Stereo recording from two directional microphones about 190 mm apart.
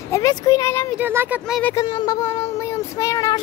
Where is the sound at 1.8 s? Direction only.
20° left (ahead or behind).